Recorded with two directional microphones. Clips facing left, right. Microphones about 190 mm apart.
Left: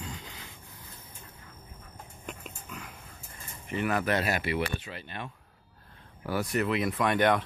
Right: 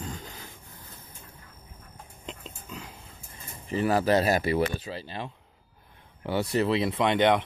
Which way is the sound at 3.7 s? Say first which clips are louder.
Right 5 dB; 35° right (ahead or behind).